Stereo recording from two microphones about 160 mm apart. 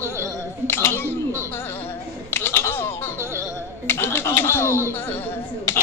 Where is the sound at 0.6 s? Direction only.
15° left (ahead or behind).